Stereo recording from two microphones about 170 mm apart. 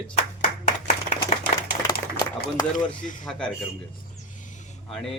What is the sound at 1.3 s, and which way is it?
Applause, 45° left (ahead or behind).